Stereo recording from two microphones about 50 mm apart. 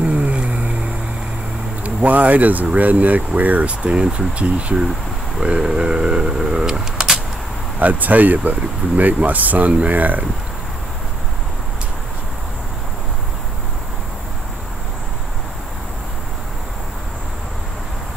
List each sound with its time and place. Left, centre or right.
0.0 s vehicle: right
2.0 s speech: right
5.4 s a sound: centre
7.8 s speech: right